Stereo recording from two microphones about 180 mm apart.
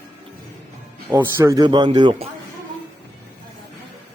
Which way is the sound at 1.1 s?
15° right (ahead or behind).